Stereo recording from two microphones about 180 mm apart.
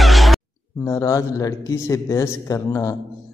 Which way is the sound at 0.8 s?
15° left (ahead or behind).